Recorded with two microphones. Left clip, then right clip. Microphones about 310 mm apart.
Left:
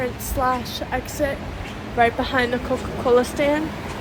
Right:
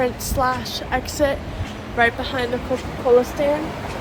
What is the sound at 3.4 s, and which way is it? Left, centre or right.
Speech, left.